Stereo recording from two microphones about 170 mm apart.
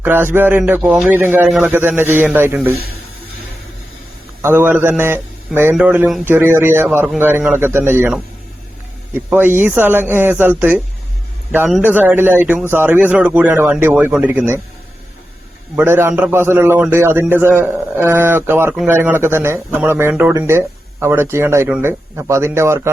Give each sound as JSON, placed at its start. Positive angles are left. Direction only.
{"t": 0.0, "sound": "speech", "side_deg": -15}
{"t": 4.4, "sound": "speech", "side_deg": -15}
{"t": 9.1, "sound": "speech", "side_deg": -10}
{"t": 11.8, "sound": "speech", "side_deg": -10}
{"t": 15.7, "sound": "speech", "side_deg": -15}